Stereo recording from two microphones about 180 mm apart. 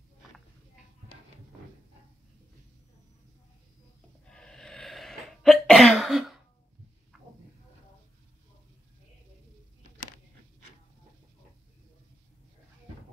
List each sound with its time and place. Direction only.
4.3 s cough: 5° left (ahead or behind)